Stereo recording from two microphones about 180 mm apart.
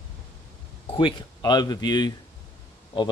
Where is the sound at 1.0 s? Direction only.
25° left (ahead or behind).